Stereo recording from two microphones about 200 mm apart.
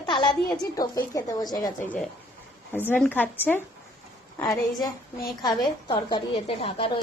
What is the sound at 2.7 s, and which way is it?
Speech, 10° left (ahead or behind).